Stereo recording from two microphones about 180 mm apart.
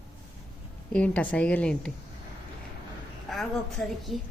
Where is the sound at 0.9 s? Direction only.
10° left (ahead or behind).